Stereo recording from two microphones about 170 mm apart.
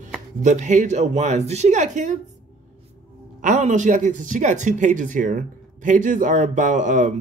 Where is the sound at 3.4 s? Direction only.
45° right (ahead or behind).